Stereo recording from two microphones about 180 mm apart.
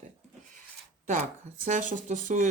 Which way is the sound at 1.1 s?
45° right (ahead or behind).